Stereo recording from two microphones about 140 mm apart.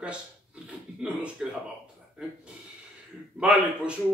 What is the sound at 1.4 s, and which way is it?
Speech, centre (ahead or behind).